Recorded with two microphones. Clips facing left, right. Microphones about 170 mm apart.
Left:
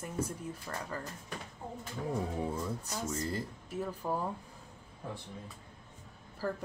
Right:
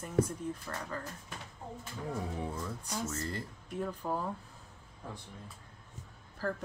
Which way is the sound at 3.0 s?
15° left (ahead or behind).